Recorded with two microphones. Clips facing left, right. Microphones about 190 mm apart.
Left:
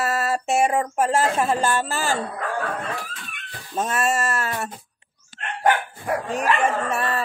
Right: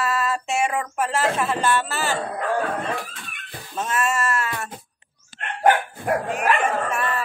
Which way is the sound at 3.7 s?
35° left (ahead or behind).